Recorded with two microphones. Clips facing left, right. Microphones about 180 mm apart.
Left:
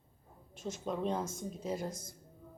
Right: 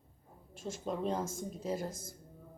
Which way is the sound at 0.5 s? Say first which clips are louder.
Left 1 dB; 45° right (ahead or behind).